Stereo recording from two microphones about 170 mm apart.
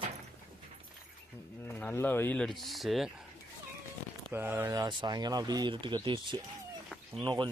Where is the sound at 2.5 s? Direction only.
Centre (ahead or behind).